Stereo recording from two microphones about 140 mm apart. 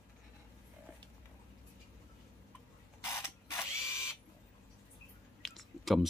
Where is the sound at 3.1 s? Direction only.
20° left (ahead or behind).